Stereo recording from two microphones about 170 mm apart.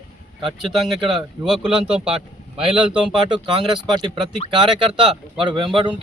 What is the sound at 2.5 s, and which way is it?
Speech, 30° right (ahead or behind).